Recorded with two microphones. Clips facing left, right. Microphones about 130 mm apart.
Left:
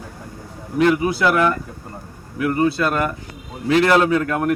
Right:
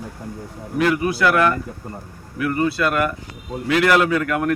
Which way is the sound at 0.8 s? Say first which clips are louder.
Left 2 dB; 20° left (ahead or behind).